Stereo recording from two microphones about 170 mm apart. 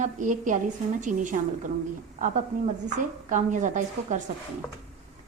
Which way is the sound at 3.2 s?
50° right (ahead or behind).